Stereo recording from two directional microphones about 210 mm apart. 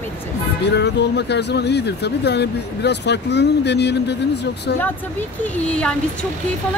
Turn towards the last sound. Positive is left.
turn(degrees=5)  # may be behind; listen again after turning